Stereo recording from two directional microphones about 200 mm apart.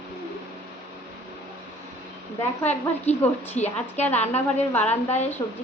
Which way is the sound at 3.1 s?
35° left (ahead or behind).